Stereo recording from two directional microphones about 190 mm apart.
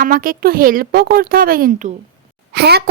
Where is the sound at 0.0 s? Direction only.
50° right (ahead or behind).